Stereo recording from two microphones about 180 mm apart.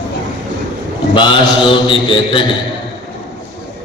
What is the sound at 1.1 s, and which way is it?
A man's voice, 30° left (ahead or behind).